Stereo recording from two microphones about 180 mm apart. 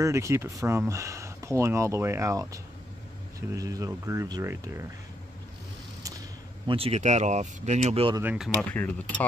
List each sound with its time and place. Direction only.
0.0 s speech: 15° right (ahead or behind)
6.7 s speech: 35° right (ahead or behind)
8.2 s speech: 10° right (ahead or behind)
8.5 s speech: 10° left (ahead or behind)